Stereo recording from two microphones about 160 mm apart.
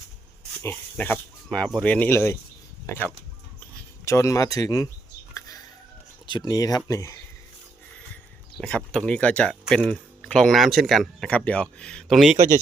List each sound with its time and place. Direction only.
0.6 s speech: 10° left (ahead or behind)
5.3 s a sound: 25° left (ahead or behind)
6.2 s speech: 25° left (ahead or behind)
8.5 s speech: 5° left (ahead or behind)